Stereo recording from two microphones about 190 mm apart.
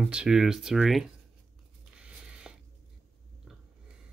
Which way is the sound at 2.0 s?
5° right (ahead or behind).